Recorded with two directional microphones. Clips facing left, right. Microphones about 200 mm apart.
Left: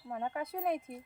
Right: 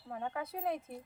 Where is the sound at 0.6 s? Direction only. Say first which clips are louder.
Left 3 dB; 15° left (ahead or behind).